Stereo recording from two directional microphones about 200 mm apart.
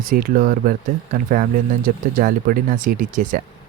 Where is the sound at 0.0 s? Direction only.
45° right (ahead or behind).